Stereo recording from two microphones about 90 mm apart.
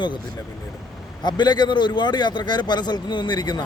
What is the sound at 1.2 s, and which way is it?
A man's voice, 55° left (ahead or behind).